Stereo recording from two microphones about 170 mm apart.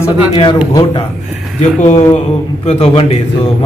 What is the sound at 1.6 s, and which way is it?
A man's voice, 45° left (ahead or behind).